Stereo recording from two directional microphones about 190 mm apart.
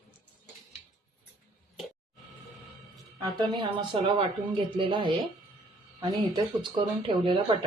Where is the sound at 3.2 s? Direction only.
25° right (ahead or behind).